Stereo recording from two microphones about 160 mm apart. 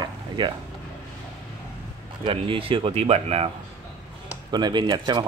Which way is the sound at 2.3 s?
35° right (ahead or behind).